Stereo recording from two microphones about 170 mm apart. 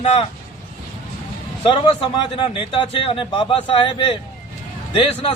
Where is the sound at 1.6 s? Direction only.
30° left (ahead or behind).